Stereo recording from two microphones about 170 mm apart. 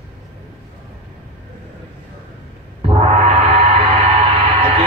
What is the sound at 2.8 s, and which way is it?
Gong, 35° right (ahead or behind).